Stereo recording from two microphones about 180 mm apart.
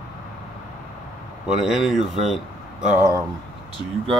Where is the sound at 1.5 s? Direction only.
Centre (ahead or behind).